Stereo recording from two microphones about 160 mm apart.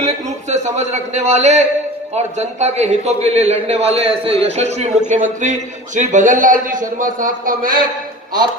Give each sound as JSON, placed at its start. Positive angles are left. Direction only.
{"t": 0.4, "sound": "a man's voice", "side_deg": -45}